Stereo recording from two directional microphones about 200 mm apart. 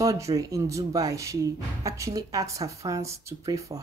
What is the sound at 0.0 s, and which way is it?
Speech, 15° right (ahead or behind).